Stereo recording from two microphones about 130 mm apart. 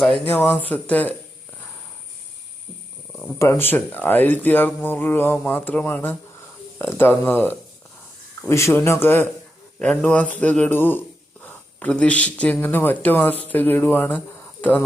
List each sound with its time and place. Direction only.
0.3 s speech: 15° left (ahead or behind)
3.1 s speech: 20° left (ahead or behind)